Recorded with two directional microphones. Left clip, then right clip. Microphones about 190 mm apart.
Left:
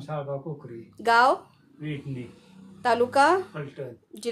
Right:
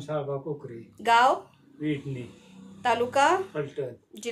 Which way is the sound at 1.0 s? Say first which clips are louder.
Left 1 dB; 30° left (ahead or behind).